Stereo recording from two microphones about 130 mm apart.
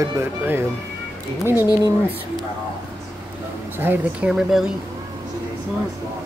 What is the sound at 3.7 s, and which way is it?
Speech, 15° right (ahead or behind).